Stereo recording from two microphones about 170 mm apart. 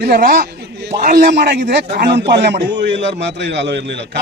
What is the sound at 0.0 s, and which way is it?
A man's voice, 60° right (ahead or behind).